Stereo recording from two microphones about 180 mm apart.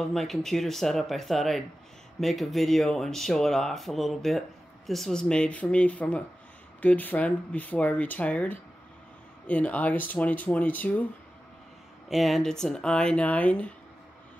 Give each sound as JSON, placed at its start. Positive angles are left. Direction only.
{"t": 0.0, "sound": "speech", "side_deg": 0}
{"t": 12.1, "sound": "speech", "side_deg": 0}